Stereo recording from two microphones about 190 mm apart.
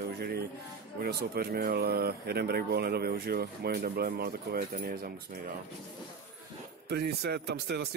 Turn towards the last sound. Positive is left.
turn(degrees=-60)  # may be behind; listen again after turning